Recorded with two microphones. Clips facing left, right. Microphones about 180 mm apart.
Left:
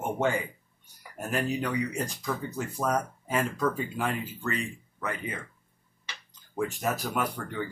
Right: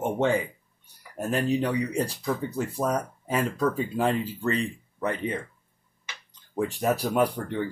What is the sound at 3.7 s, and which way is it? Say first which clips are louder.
Speech: right 6 dB; 30° right (ahead or behind).